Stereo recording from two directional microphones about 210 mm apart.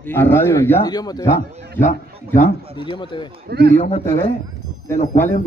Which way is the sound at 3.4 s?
50° right (ahead or behind).